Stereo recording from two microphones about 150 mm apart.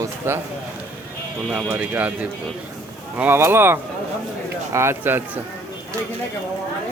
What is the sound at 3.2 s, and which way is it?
Speech, 15° right (ahead or behind).